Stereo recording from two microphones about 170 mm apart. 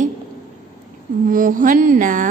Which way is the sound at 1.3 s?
50° right (ahead or behind).